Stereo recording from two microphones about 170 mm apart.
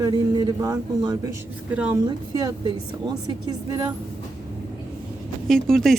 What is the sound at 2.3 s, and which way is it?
A man's voice, 20° right (ahead or behind).